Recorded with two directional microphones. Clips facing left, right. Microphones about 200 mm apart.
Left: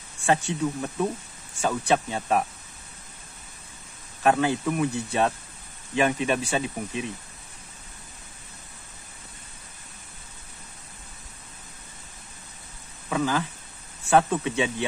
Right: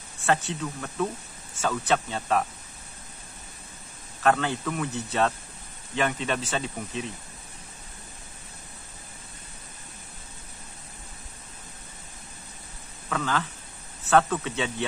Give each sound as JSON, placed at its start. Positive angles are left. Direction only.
{"t": 0.2, "sound": "speech", "side_deg": 15}
{"t": 4.2, "sound": "speech", "side_deg": 15}
{"t": 13.1, "sound": "speech", "side_deg": 15}